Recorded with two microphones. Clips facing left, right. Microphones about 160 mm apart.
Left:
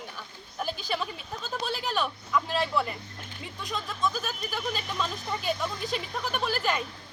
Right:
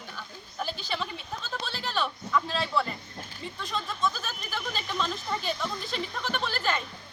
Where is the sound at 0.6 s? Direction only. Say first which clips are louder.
Left 3 dB; 50° left (ahead or behind).